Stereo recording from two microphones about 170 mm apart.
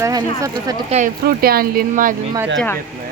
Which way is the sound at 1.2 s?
60° right (ahead or behind).